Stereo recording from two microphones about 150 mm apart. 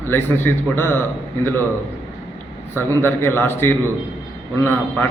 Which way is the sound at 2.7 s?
15° left (ahead or behind).